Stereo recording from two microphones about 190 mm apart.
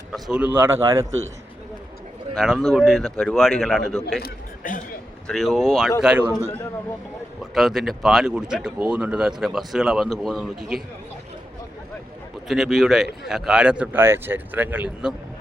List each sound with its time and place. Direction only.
0.1 s speech: 5° right (ahead or behind)
2.3 s speech: centre (ahead or behind)
4.2 s a sound: 45° left (ahead or behind)
5.3 s speech: centre (ahead or behind)
7.5 s speech: centre (ahead or behind)
12.5 s speech: centre (ahead or behind)